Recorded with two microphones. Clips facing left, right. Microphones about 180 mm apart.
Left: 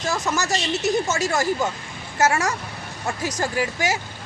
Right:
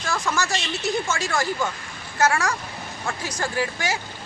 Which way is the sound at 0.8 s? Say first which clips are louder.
Left 4 dB; 45° left (ahead or behind).